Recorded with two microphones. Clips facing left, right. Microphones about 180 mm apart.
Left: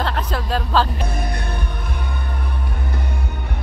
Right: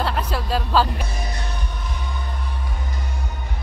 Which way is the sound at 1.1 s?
55° left (ahead or behind).